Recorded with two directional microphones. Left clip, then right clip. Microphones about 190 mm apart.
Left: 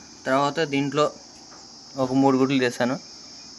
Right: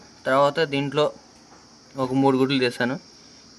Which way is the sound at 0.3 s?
15° right (ahead or behind).